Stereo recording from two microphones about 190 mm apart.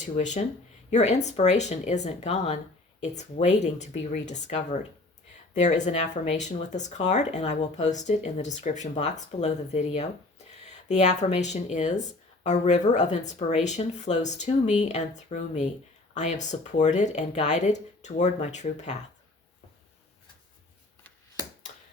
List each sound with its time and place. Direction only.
0.0 s speech: 40° left (ahead or behind)